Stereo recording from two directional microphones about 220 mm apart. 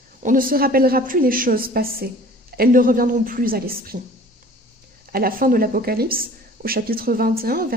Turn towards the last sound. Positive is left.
turn(degrees=-45)  # may be behind; listen again after turning